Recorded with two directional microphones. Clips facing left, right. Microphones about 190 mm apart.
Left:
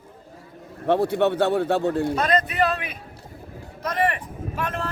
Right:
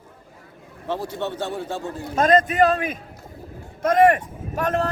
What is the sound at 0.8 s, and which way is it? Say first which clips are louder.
Speech: left 7 dB; 60° left (ahead or behind).